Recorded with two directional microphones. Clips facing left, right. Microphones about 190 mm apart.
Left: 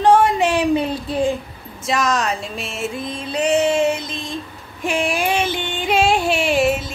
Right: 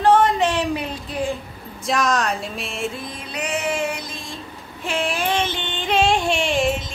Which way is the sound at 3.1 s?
30° left (ahead or behind).